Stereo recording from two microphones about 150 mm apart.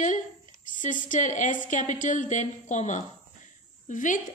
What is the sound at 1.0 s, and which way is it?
A woman's voice, 55° left (ahead or behind).